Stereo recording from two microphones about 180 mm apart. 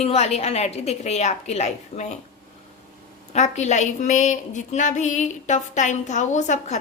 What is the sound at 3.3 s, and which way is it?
A woman's voice, 40° left (ahead or behind).